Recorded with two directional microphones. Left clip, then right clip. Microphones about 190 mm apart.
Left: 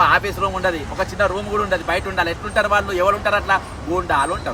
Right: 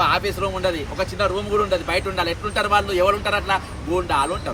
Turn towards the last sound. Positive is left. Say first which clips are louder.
# left 2 dB
turn(degrees=15)  # may be behind; listen again after turning